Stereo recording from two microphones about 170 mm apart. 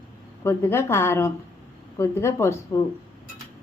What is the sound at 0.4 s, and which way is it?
A woman's voice, 15° left (ahead or behind).